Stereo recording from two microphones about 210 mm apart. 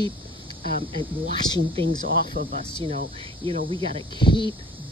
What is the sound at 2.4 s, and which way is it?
Speech, 45° right (ahead or behind).